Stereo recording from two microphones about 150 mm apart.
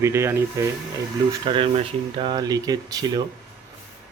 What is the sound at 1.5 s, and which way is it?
Speech, 35° right (ahead or behind).